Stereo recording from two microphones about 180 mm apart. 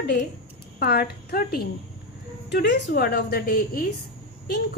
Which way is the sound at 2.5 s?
70° left (ahead or behind).